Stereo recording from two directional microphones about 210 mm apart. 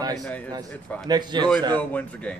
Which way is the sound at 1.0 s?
20° right (ahead or behind).